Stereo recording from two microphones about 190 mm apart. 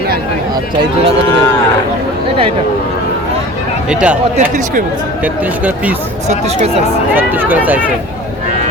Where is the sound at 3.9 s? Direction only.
5° right (ahead or behind).